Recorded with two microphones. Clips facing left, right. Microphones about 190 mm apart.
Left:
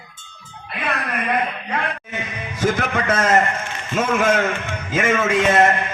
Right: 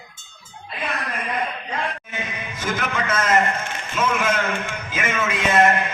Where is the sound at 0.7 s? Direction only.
65° left (ahead or behind).